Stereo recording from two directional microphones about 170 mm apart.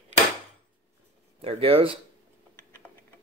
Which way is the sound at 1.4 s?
35° right (ahead or behind).